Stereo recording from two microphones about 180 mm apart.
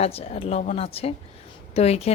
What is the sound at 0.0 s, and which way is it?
Speech, 35° left (ahead or behind).